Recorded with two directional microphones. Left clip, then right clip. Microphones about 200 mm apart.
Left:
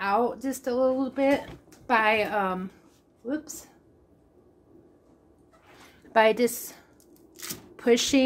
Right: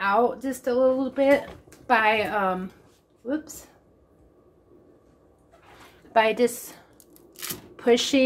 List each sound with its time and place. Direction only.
0.0 s a woman's voice: 20° left (ahead or behind)
6.1 s a woman's voice: 25° left (ahead or behind)